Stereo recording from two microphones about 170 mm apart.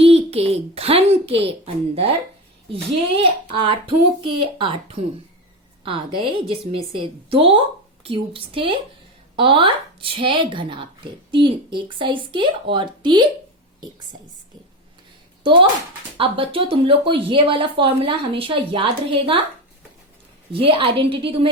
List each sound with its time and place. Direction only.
0.0 s a child's voice: 35° right (ahead or behind)
3.2 s a woman's voice: 30° right (ahead or behind)
16.1 s speech: 30° right (ahead or behind)
20.5 s speech: 30° right (ahead or behind)